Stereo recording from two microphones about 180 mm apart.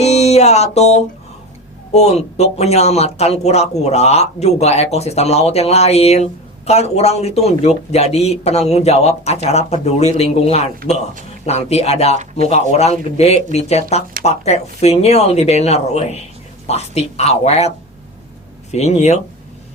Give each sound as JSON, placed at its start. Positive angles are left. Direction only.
{"t": 0.0, "sound": "music", "side_deg": 35}
{"t": 1.9, "sound": "speech", "side_deg": 35}
{"t": 18.7, "sound": "speech", "side_deg": 40}